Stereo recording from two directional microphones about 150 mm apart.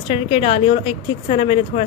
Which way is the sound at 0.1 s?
45° left (ahead or behind).